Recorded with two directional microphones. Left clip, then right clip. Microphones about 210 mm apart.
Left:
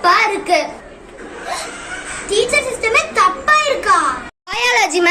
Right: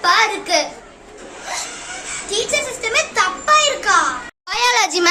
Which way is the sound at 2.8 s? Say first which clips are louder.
Left 4 dB; 15° right (ahead or behind).